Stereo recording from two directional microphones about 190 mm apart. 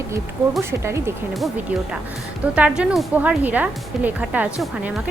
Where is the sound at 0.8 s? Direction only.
15° right (ahead or behind).